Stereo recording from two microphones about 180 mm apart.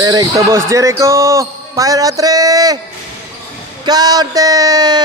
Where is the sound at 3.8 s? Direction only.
20° right (ahead or behind).